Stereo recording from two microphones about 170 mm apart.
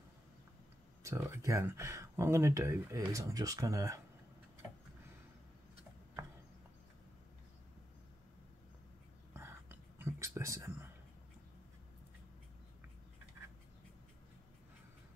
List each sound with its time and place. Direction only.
1.0 s speech: 15° right (ahead or behind)
9.3 s whispering: 15° right (ahead or behind)